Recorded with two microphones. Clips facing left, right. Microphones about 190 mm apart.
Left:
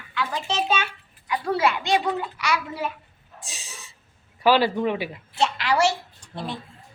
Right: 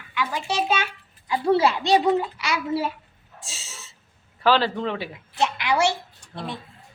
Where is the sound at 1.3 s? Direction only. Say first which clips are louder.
Right 3 dB; 30° right (ahead or behind).